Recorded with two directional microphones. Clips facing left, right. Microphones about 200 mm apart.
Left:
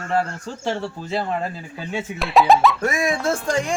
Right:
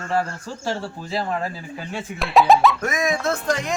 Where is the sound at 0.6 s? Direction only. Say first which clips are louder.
Left 2 dB; 20° left (ahead or behind).